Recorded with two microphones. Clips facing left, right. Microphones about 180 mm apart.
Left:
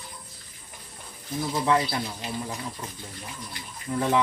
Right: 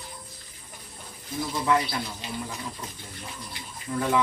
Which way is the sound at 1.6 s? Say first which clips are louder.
Left 1 dB; 25° left (ahead or behind).